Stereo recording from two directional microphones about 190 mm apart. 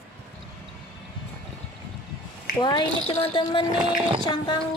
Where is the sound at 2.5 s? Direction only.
25° left (ahead or behind).